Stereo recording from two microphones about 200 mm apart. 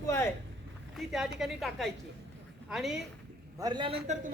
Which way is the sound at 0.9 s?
Centre (ahead or behind).